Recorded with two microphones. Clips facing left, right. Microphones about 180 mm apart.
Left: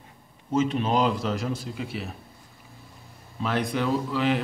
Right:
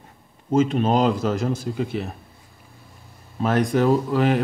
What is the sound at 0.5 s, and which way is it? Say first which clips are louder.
Speech: right 5 dB; 45° right (ahead or behind).